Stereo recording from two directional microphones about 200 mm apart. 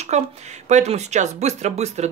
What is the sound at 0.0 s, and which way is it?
Speech, 35° right (ahead or behind).